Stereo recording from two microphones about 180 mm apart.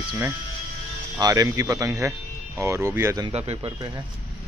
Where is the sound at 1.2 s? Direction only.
20° right (ahead or behind).